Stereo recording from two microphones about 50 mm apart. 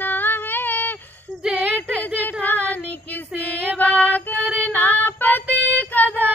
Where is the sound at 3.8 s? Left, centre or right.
Left.